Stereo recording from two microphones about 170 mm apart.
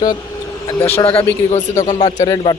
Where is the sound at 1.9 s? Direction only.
45° left (ahead or behind).